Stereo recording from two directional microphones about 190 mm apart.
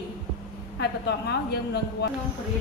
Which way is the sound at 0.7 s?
60° left (ahead or behind).